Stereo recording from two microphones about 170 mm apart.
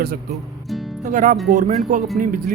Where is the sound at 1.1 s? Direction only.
50° right (ahead or behind).